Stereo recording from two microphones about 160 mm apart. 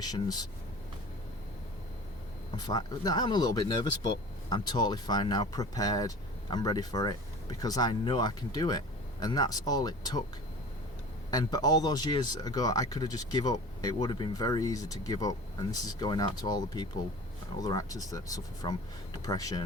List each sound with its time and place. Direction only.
0.0 s speech: 25° left (ahead or behind)
2.6 s speech: 25° left (ahead or behind)
11.3 s speech: 25° left (ahead or behind)